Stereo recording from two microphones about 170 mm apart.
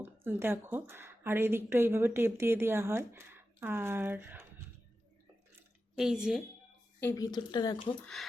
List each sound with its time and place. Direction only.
0.0 s a woman's voice: 15° right (ahead or behind)
6.0 s a woman's voice: 5° right (ahead or behind)
7.0 s speech: 20° left (ahead or behind)
8.0 s a woman's voice: centre (ahead or behind)